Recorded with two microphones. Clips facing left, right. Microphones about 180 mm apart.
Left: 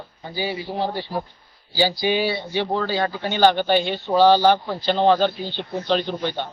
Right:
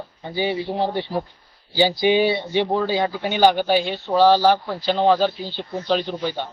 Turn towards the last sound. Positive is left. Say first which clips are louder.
# even
turn(degrees=-5)  # may be behind; listen again after turning